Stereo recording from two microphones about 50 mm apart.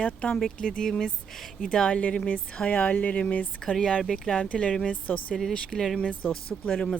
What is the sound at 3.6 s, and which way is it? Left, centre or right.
Speech, centre.